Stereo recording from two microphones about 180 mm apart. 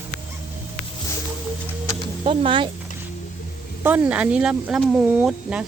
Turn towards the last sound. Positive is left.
turn(degrees=-5)  # may be behind; listen again after turning